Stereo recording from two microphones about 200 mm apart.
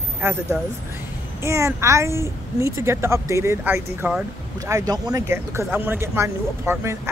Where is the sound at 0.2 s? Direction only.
15° right (ahead or behind).